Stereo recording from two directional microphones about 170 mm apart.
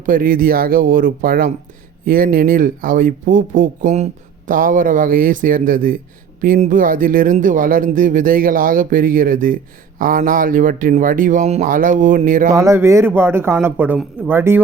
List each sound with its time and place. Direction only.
0.0 s speech: 55° right (ahead or behind)
12.5 s speech: 15° right (ahead or behind)